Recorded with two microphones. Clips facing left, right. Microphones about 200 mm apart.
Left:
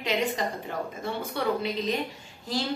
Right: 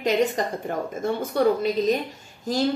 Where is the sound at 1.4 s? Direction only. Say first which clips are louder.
Right 8 dB; 40° right (ahead or behind).